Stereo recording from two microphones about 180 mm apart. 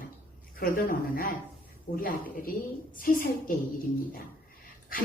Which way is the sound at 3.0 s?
50° left (ahead or behind).